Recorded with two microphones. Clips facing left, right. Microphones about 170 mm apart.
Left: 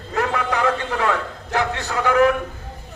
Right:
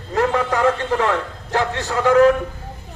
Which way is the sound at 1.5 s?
35° right (ahead or behind).